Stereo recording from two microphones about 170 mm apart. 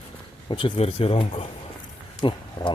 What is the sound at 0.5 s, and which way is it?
Speech, 30° left (ahead or behind).